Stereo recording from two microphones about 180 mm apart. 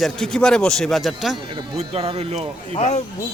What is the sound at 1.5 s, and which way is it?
Speech, 30° right (ahead or behind).